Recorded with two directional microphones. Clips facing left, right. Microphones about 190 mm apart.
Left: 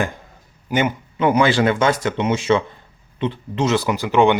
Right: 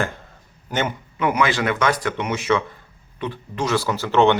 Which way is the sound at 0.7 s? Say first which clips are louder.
Left 4 dB; 10° left (ahead or behind).